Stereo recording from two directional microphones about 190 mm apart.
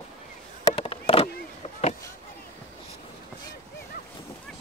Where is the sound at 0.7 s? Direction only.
30° left (ahead or behind).